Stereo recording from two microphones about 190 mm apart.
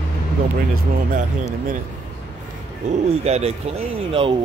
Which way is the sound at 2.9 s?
35° right (ahead or behind).